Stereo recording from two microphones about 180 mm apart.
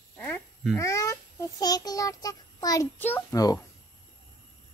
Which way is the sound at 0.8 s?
15° left (ahead or behind).